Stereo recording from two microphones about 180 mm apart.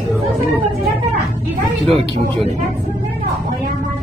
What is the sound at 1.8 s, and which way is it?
Speech, 30° right (ahead or behind).